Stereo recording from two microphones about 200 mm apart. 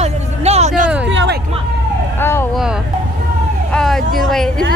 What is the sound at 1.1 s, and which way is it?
Music, 60° right (ahead or behind).